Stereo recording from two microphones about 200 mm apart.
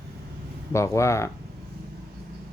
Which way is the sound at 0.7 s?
15° left (ahead or behind).